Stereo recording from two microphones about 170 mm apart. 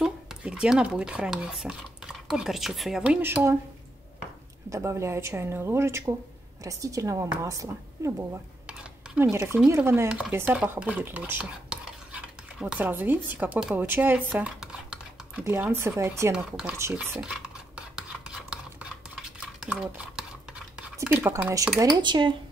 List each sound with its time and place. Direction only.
0.0 s speech: 5° right (ahead or behind)
4.6 s a woman's voice: 15° right (ahead or behind)
8.6 s a sound: 10° right (ahead or behind)
9.7 s speech: 15° right (ahead or behind)
17.9 s stir: 5° right (ahead or behind)
21.9 s a woman's voice: 25° right (ahead or behind)